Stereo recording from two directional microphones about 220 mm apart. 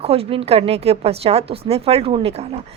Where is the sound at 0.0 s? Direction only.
25° right (ahead or behind).